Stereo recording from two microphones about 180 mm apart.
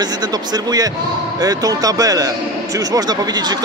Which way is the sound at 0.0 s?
20° right (ahead or behind).